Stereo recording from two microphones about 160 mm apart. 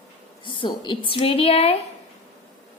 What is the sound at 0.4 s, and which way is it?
A woman's voice, 30° left (ahead or behind).